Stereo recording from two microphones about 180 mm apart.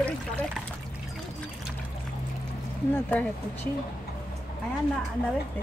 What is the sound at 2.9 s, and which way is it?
Speech, 5° left (ahead or behind).